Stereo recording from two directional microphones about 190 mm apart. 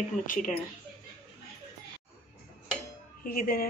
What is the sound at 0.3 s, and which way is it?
Dishes, 40° left (ahead or behind).